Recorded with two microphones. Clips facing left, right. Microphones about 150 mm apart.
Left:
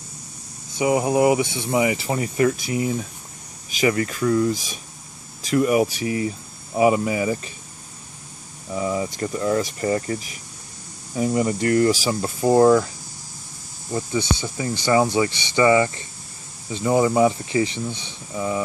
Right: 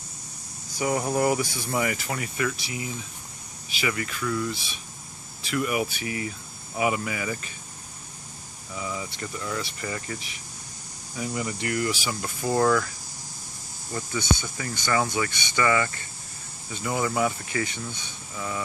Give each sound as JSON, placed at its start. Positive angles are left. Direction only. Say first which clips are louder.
{"t": 0.8, "sound": "speech", "louder": "left 6 dB", "side_deg": 15}
{"t": 1.4, "sound": "speech", "louder": "left 6 dB", "side_deg": 25}
{"t": 2.0, "sound": "speech", "louder": "left 8 dB", "side_deg": 30}
{"t": 2.5, "sound": "speech", "louder": "left 11 dB", "side_deg": 45}
{"t": 8.7, "sound": "speech", "louder": "left 9 dB", "side_deg": 30}
{"t": 13.9, "sound": "speech", "louder": "left 4 dB", "side_deg": 25}